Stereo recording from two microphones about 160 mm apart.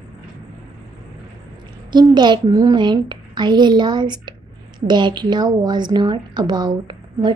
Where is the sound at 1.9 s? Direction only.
25° right (ahead or behind).